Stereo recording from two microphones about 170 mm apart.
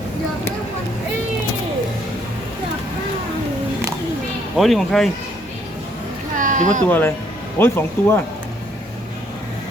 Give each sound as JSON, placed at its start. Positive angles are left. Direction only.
{"t": 4.5, "sound": "speech", "side_deg": 0}
{"t": 6.3, "sound": "a sound", "side_deg": -50}
{"t": 6.8, "sound": "speech", "side_deg": 10}